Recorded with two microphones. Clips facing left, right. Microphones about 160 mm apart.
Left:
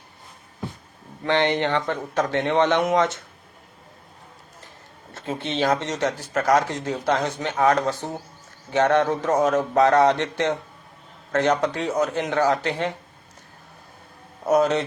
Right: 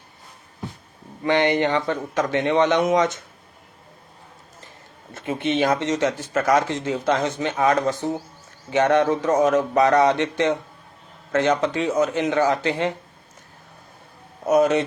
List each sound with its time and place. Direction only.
1.2 s speech: 10° right (ahead or behind)
5.2 s speech: 15° right (ahead or behind)
14.4 s speech: 20° right (ahead or behind)